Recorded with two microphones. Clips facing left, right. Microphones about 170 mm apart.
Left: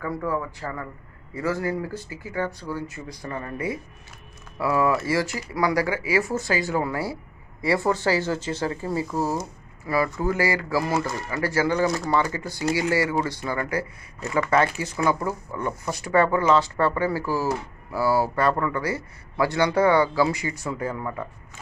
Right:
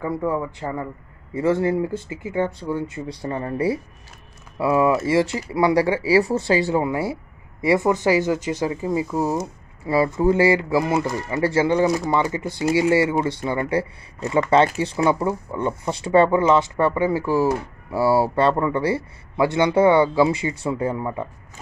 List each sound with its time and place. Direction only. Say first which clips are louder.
0.0 s speech: right 4 dB; 20° right (ahead or behind)
4.6 s speech: right 4 dB; 25° right (ahead or behind)